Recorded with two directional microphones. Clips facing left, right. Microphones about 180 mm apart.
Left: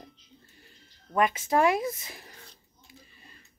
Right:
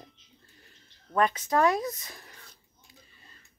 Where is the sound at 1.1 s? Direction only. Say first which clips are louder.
Left 1 dB; 10° left (ahead or behind).